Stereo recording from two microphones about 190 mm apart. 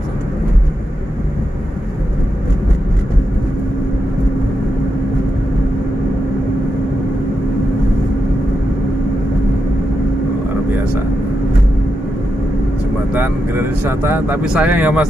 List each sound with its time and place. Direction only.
13.1 s speech: 10° right (ahead or behind)